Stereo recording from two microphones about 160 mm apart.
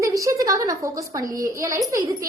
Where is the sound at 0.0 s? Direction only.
20° right (ahead or behind).